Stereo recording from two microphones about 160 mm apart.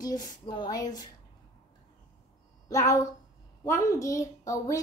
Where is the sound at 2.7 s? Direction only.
20° left (ahead or behind).